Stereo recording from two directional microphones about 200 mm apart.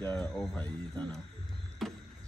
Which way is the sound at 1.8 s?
Centre (ahead or behind).